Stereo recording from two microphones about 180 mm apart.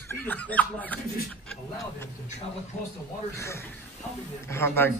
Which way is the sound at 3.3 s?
15° left (ahead or behind).